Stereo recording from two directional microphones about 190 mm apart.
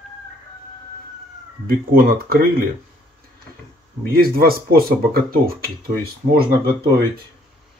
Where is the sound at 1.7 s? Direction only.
50° right (ahead or behind).